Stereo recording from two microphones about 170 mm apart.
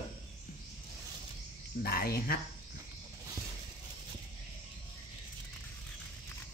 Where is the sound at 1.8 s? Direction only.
65° left (ahead or behind).